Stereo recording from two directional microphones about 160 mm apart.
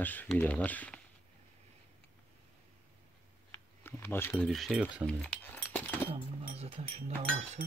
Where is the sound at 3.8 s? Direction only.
15° left (ahead or behind).